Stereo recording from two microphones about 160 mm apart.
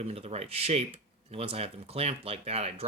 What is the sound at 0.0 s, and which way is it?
Speech, 40° right (ahead or behind).